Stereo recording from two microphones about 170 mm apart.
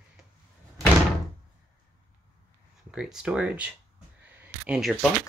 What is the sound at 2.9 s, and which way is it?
Speech, 5° right (ahead or behind).